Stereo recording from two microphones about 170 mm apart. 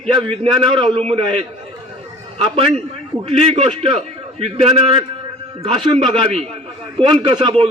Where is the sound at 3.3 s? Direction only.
35° right (ahead or behind).